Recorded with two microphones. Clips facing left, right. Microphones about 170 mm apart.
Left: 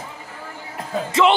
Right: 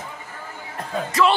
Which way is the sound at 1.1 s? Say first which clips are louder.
Left 2 dB; 25° left (ahead or behind).